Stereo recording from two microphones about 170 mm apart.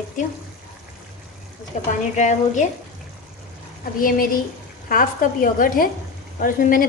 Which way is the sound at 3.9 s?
55° left (ahead or behind).